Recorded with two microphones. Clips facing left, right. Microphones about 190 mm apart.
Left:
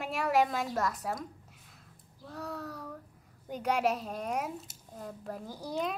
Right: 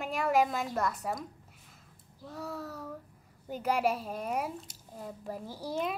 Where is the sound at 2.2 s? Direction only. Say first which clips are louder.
Even; 5° right (ahead or behind).